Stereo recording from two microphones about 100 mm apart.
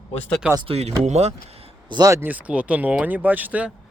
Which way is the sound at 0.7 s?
90° right.